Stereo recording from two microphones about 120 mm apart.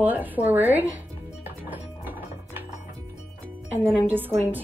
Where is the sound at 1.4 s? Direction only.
15° right (ahead or behind).